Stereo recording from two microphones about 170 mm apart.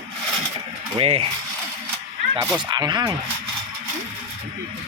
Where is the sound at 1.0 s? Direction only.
35° right (ahead or behind).